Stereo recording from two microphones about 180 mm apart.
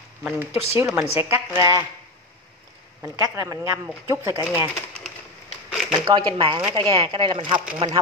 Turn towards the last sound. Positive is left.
turn(degrees=-30)  # may be behind; listen again after turning